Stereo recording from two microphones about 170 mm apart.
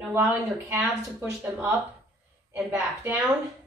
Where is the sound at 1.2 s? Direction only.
5° right (ahead or behind).